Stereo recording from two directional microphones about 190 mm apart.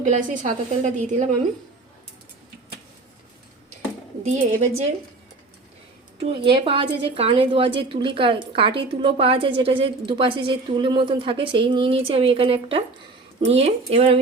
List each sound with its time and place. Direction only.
0.0 s a woman's voice: 45° right (ahead or behind)
4.2 s a woman's voice: 40° right (ahead or behind)
6.1 s a woman's voice: 25° right (ahead or behind)